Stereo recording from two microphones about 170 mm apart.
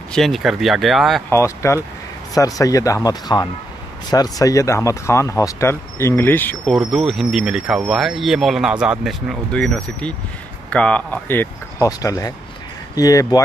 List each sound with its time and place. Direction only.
0.1 s speech: centre (ahead or behind)
1.3 s speech: 15° left (ahead or behind)
6.7 s speech: centre (ahead or behind); by 13.4 s 20° left (ahead or behind)